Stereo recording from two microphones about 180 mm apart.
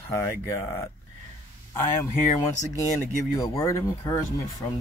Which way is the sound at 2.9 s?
15° left (ahead or behind).